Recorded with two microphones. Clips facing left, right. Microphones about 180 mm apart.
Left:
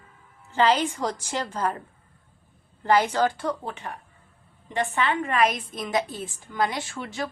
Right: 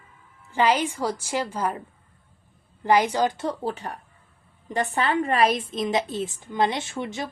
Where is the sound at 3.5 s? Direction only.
35° right (ahead or behind).